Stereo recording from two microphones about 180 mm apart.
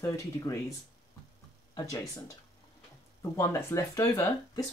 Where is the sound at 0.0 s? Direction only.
15° left (ahead or behind).